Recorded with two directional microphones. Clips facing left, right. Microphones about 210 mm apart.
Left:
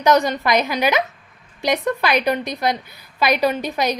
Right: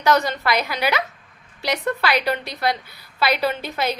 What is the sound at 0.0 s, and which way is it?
A woman's voice, 15° left (ahead or behind).